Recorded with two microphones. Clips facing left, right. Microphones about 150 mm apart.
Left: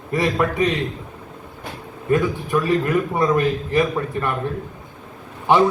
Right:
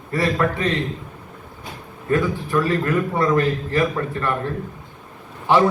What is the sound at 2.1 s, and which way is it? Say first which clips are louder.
A man's voice: left 1 dB; 15° left (ahead or behind).